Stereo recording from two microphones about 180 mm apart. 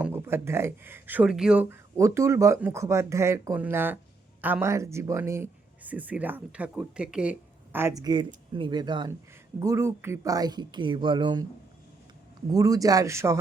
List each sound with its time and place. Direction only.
0.0 s a woman's voice: 10° right (ahead or behind)
12.5 s a woman's voice: 20° right (ahead or behind)